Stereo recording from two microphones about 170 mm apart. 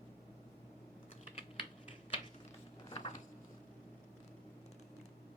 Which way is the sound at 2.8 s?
30° left (ahead or behind).